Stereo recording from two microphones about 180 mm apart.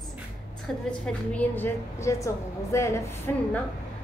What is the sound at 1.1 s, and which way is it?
A woman's voice, 10° left (ahead or behind).